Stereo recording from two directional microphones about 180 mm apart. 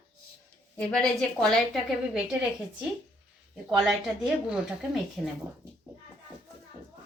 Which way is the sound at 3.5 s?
Centre (ahead or behind).